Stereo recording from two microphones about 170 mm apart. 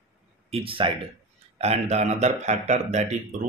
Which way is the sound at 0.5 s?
30° right (ahead or behind).